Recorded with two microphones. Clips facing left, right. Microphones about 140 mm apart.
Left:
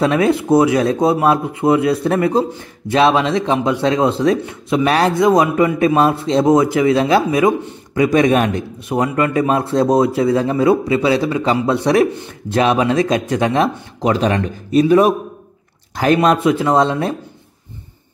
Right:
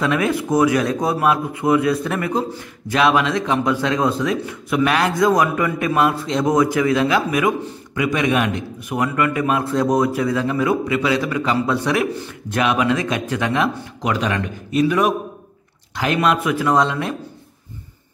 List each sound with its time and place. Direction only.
0.0 s a man's voice: 30° left (ahead or behind)
8.8 s a man's voice: 25° left (ahead or behind)